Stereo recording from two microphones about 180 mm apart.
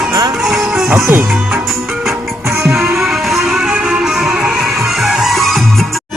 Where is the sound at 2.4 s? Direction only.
15° right (ahead or behind).